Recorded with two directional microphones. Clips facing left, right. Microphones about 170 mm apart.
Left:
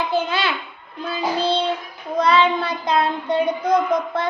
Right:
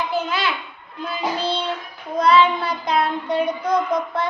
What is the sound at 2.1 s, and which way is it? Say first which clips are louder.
Child singing: right 1 dB; 25° left (ahead or behind).